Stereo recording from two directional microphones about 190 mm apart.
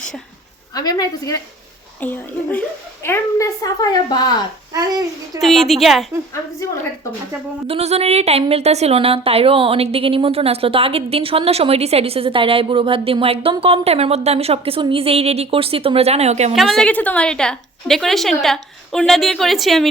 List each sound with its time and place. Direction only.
0.7 s a woman's voice: 20° left (ahead or behind)
2.0 s a woman's voice: 10° left (ahead or behind)
4.7 s a child's voice: 20° right (ahead or behind)
5.4 s a woman's voice: centre (ahead or behind)
7.7 s a woman's voice: 35° right (ahead or behind)
16.6 s a woman's voice: 5° left (ahead or behind)